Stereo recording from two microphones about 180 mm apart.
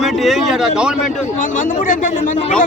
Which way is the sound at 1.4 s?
45° left (ahead or behind).